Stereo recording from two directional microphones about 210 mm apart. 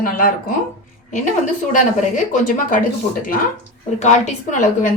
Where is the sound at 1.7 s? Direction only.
40° left (ahead or behind).